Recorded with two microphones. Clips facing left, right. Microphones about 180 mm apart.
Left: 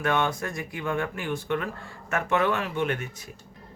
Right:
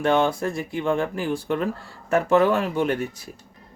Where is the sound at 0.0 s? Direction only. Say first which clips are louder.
Right 6 dB; 30° right (ahead or behind).